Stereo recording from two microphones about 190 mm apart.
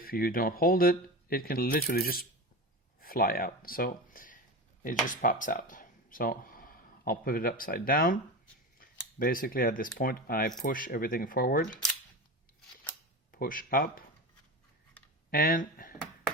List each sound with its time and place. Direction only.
0.0 s speech: 50° left (ahead or behind)
13.3 s speech: 50° left (ahead or behind)
15.3 s speech: 50° left (ahead or behind)